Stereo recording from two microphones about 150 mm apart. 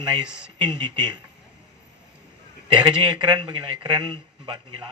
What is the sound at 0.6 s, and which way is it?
Speech, 30° right (ahead or behind).